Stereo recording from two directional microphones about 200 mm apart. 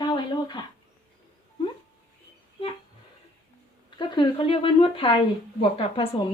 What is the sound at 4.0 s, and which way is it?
A woman's voice, 25° left (ahead or behind).